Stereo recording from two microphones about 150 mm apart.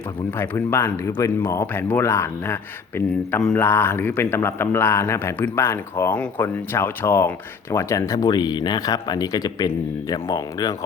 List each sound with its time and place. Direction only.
0.3 s speech: 15° left (ahead or behind)